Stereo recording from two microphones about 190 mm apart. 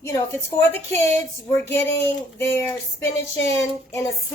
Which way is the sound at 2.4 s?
10° left (ahead or behind).